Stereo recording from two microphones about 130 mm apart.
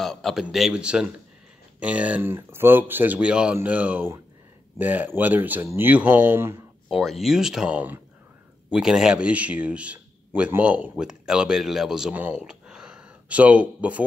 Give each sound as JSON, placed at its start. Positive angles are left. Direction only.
{"t": 0.0, "sound": "a man's voice", "side_deg": 0}
{"t": 6.9, "sound": "speech", "side_deg": 0}